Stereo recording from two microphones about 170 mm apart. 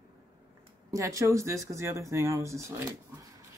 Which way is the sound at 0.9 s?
20° right (ahead or behind).